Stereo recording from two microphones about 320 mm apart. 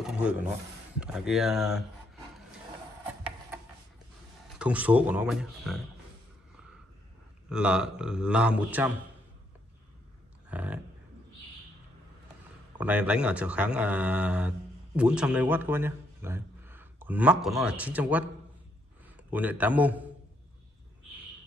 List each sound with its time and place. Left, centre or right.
0.0 s a sound: centre
0.9 s speech: centre
4.6 s speech: centre
7.4 s speech: centre
10.5 s speech: centre
12.7 s a man's voice: centre